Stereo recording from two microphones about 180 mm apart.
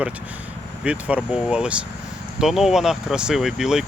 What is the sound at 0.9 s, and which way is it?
Speech, 5° right (ahead or behind).